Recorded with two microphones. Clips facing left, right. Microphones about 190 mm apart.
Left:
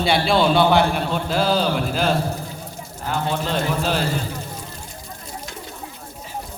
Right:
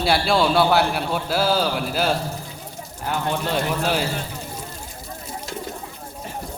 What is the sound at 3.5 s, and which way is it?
Speech, 10° right (ahead or behind).